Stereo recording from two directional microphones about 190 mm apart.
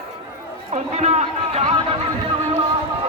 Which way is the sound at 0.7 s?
35° right (ahead or behind).